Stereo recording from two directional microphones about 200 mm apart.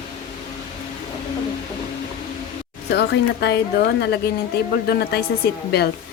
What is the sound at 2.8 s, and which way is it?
A woman's voice, 55° left (ahead or behind).